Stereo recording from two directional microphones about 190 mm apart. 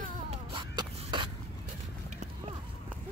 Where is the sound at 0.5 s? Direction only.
25° right (ahead or behind).